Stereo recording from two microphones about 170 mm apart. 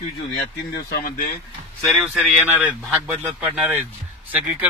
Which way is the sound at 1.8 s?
Centre (ahead or behind).